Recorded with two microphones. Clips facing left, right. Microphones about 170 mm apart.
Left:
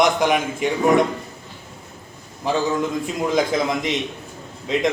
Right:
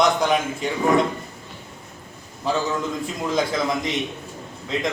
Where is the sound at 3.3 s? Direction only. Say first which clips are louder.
Left 2 dB; 20° left (ahead or behind).